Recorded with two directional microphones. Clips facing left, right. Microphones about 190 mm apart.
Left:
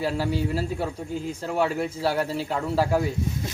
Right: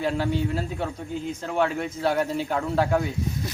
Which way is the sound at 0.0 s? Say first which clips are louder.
Right 1 dB; 5° left (ahead or behind).